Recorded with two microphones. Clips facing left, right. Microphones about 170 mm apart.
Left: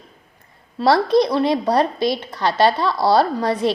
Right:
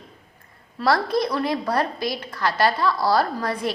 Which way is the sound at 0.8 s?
25° left (ahead or behind).